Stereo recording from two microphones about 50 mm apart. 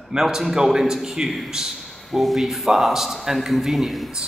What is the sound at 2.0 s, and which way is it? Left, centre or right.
Speech, centre.